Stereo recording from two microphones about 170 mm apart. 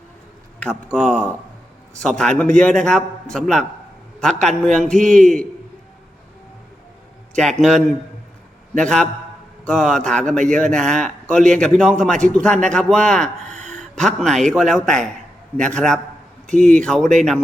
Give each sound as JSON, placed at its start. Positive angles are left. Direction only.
{"t": 0.6, "sound": "a man's voice", "side_deg": 5}
{"t": 7.3, "sound": "a man's voice", "side_deg": 5}
{"t": 13.5, "sound": "a sound", "side_deg": -45}
{"t": 13.7, "sound": "a man's voice", "side_deg": 5}